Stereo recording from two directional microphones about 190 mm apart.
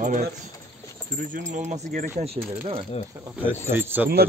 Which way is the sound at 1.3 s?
40° right (ahead or behind).